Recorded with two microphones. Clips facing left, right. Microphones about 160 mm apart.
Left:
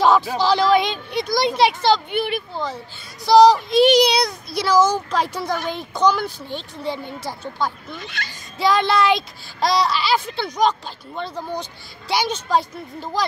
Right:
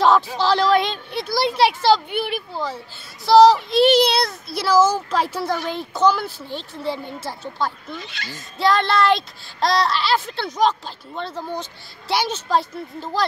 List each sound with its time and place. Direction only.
0.4 s speech: centre (ahead or behind)
8.0 s speech: 50° left (ahead or behind)
8.5 s speech: centre (ahead or behind)